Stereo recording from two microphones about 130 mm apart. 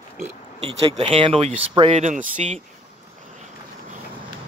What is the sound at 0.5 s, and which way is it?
Speech, 45° right (ahead or behind).